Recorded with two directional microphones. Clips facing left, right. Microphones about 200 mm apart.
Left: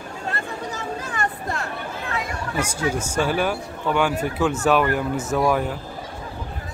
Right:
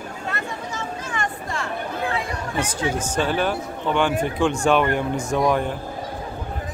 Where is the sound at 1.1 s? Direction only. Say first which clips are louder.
Even; 40° left (ahead or behind).